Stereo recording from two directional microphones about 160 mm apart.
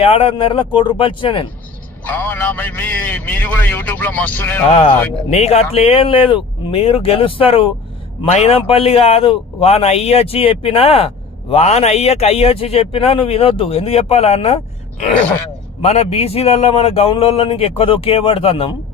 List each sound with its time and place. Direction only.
0.0 s a man's voice: 35° left (ahead or behind)
2.0 s a man's voice: 10° left (ahead or behind)
5.3 s a man's voice: 40° left (ahead or behind)
15.8 s a man's voice: 40° left (ahead or behind)